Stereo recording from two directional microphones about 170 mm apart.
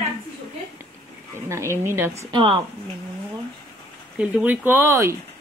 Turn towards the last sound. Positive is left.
turn(degrees=-15)  # may be behind; listen again after turning